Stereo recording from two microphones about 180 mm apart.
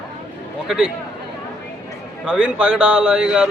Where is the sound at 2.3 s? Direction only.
5° right (ahead or behind).